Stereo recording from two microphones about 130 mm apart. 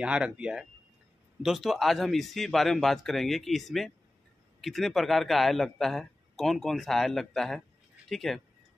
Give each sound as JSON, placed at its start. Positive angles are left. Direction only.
{"t": 0.0, "sound": "a man's voice", "side_deg": -10}